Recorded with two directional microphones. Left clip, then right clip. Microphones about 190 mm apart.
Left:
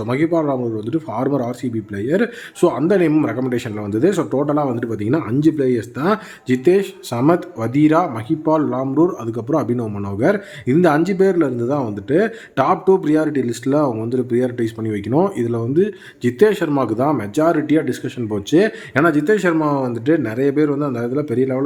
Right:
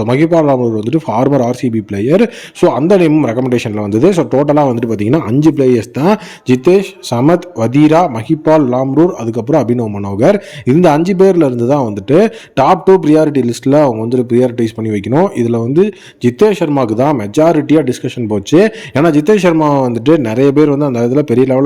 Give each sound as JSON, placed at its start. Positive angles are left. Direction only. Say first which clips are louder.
{"t": 0.0, "sound": "a man's voice", "louder": "right 8 dB", "side_deg": -30}